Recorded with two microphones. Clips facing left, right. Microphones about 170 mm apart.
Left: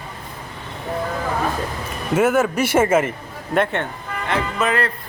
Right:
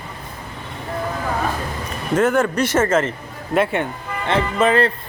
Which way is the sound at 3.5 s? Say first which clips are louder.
Right 1 dB; 10° right (ahead or behind).